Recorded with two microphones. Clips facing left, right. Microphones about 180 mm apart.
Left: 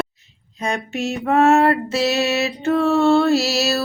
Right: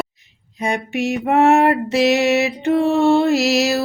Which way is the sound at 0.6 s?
15° right (ahead or behind).